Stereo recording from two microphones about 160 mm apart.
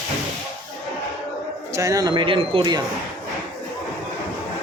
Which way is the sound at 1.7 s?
20° right (ahead or behind).